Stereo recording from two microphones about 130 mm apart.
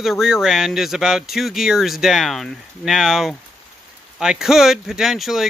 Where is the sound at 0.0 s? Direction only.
Centre (ahead or behind).